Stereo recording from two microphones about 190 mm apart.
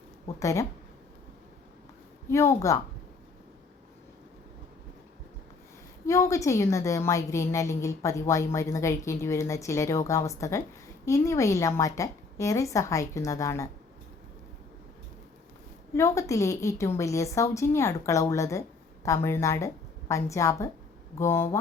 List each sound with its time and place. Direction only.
0.3 s a woman's voice: 15° left (ahead or behind)
2.3 s a woman's voice: 15° left (ahead or behind)
6.1 s a woman's voice: 15° left (ahead or behind)
16.0 s a woman's voice: 15° left (ahead or behind)